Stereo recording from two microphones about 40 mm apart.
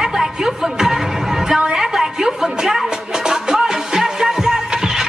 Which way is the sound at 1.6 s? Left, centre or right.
Centre.